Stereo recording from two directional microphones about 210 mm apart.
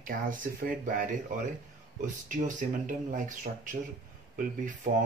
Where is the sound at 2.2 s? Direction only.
40° right (ahead or behind).